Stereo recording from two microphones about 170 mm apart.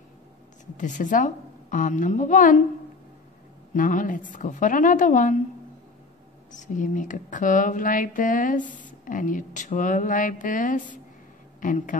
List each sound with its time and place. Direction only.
0.7 s speech: 50° left (ahead or behind)
3.7 s speech: 50° left (ahead or behind)
6.5 s speech: 50° left (ahead or behind)